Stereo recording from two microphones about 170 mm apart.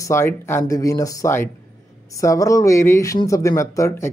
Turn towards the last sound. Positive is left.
turn(degrees=20)  # may be behind; listen again after turning